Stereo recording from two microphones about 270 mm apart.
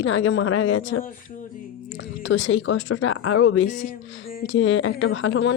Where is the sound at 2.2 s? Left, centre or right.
Left.